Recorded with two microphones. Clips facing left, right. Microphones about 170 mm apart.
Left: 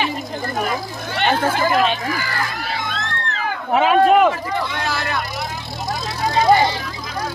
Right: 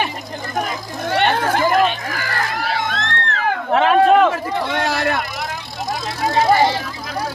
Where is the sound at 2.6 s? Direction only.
75° right (ahead or behind); by 3.5 s 55° right (ahead or behind).